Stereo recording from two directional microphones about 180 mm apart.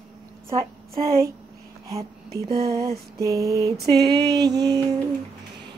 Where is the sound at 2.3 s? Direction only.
60° right (ahead or behind).